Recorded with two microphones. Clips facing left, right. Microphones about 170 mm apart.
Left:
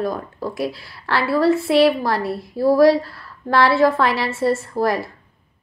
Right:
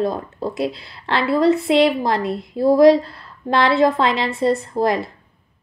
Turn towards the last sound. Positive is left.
turn(degrees=-20)  # may be behind; listen again after turning